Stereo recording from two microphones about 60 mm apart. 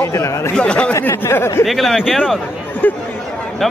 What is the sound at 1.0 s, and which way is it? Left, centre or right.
Speech, left.